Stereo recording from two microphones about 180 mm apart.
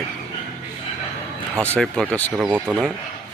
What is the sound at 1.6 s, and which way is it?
Speech, 5° left (ahead or behind).